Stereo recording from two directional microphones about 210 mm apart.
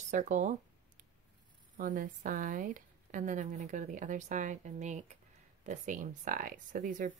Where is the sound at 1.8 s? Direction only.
40° right (ahead or behind).